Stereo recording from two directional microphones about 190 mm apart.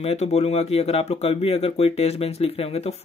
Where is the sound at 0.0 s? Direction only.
35° left (ahead or behind).